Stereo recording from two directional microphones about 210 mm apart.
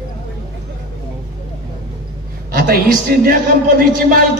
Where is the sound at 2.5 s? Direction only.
45° right (ahead or behind).